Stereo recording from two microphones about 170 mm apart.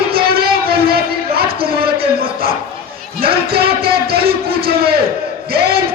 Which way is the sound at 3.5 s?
65° right (ahead or behind).